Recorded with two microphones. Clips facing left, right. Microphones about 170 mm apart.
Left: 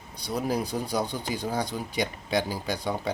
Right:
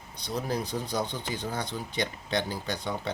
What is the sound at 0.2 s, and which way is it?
Speech, 10° left (ahead or behind).